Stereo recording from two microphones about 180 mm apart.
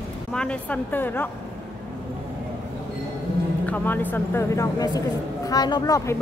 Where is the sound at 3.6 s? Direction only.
10° left (ahead or behind).